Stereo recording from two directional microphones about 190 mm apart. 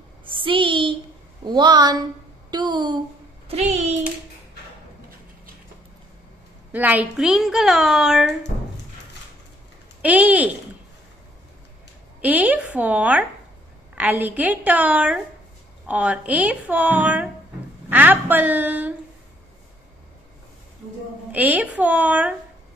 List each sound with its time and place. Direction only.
0.2 s a sound: 25° right (ahead or behind)
1.4 s a woman's voice: 25° right (ahead or behind)
3.4 s a sound: 35° right (ahead or behind)
6.7 s a woman's voice: 10° right (ahead or behind)
10.0 s a woman's voice: 10° right (ahead or behind)
12.2 s a woman's voice: 10° right (ahead or behind)
21.3 s a woman's voice: 10° right (ahead or behind)